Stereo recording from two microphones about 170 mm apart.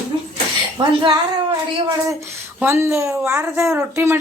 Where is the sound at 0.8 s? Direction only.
25° right (ahead or behind).